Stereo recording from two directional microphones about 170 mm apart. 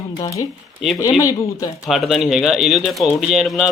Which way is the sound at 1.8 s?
Centre (ahead or behind).